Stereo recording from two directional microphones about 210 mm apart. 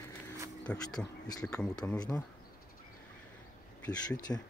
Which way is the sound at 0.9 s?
20° left (ahead or behind).